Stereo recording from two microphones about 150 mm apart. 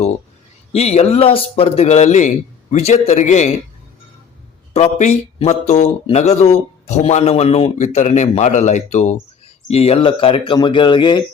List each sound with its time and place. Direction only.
0.7 s speech: 45° left (ahead or behind)
4.7 s speech: 45° left (ahead or behind); by 11.2 s 30° left (ahead or behind)